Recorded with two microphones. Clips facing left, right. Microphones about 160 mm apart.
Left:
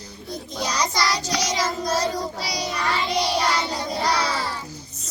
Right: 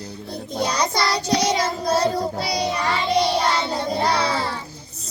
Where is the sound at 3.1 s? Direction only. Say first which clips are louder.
Right 4 dB; 25° right (ahead or behind).